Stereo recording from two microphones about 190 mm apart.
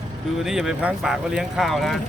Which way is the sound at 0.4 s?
Centre (ahead or behind).